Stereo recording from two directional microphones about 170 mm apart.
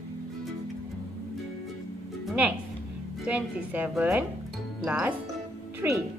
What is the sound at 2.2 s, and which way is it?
Music, 10° right (ahead or behind).